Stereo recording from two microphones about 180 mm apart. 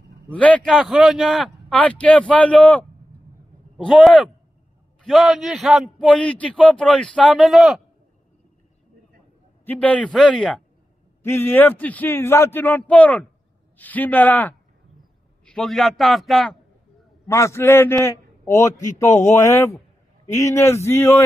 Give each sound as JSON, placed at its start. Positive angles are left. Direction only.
{"t": 0.3, "sound": "a man's voice", "side_deg": 5}
{"t": 9.7, "sound": "a man's voice", "side_deg": 10}
{"t": 17.3, "sound": "a man's voice", "side_deg": 15}